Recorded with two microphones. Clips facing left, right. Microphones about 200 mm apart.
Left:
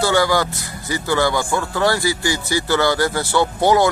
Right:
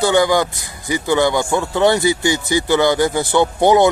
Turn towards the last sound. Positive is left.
turn(degrees=-20)  # may be behind; listen again after turning